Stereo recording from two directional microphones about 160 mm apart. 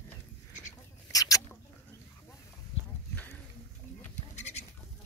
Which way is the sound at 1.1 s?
20° left (ahead or behind).